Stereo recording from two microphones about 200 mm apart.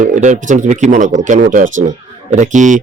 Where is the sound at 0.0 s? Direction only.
40° right (ahead or behind).